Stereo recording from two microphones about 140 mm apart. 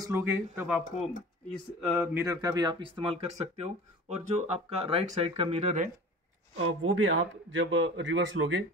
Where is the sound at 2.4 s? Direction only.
30° right (ahead or behind); by 5.9 s 50° right (ahead or behind).